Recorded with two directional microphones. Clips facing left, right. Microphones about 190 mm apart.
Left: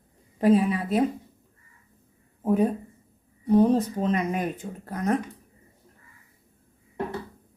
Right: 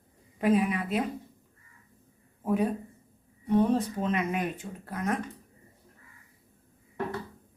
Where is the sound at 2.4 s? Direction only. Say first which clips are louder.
Left 4 dB; 40° left (ahead or behind).